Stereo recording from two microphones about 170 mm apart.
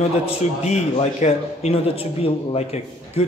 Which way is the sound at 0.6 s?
40° left (ahead or behind).